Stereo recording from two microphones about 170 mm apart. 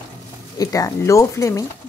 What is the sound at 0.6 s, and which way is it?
Speech, 20° left (ahead or behind).